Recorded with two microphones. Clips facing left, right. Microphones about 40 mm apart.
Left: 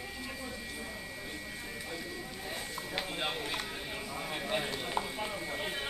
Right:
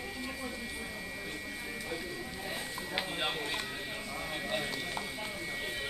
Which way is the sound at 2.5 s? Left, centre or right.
Centre.